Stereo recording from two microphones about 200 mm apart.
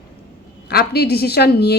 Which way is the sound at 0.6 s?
55° left (ahead or behind).